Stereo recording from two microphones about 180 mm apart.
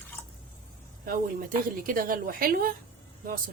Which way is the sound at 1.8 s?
50° right (ahead or behind).